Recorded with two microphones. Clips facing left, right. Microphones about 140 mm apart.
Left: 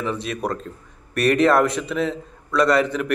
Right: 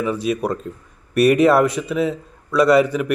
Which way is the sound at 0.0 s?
5° right (ahead or behind).